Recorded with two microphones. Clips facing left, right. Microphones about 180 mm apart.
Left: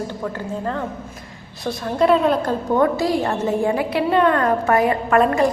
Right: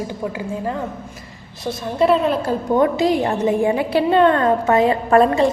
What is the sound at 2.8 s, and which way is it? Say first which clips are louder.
A woman's voice: right 2 dB; 20° right (ahead or behind).